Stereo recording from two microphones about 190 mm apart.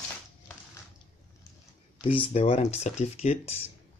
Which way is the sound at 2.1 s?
30° left (ahead or behind).